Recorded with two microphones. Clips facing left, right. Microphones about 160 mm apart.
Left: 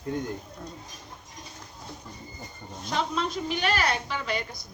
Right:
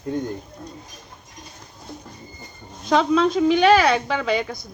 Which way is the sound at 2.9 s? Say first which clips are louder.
Right 11 dB; 90° right.